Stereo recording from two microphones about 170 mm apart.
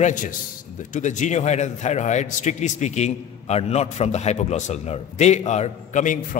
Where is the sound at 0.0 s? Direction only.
50° left (ahead or behind).